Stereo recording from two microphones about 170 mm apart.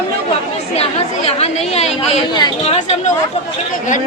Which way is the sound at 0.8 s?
35° left (ahead or behind).